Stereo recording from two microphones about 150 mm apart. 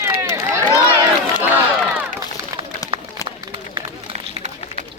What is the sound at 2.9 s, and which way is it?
Run, 40° right (ahead or behind).